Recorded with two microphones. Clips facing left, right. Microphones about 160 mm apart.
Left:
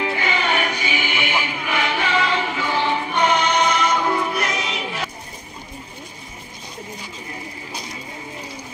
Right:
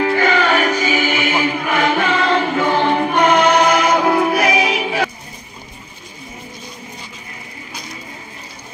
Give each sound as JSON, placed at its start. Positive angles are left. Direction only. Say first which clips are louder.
{"t": 0.0, "sound": "music", "louder": "right 8 dB", "side_deg": -45}